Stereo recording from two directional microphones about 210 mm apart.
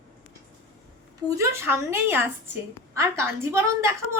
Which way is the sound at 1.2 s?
15° right (ahead or behind).